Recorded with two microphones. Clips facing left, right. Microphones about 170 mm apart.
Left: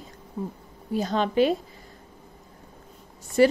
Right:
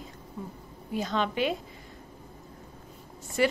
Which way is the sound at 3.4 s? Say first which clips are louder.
Left 7 dB; 35° left (ahead or behind).